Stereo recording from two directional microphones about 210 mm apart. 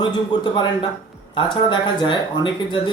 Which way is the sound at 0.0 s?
20° left (ahead or behind).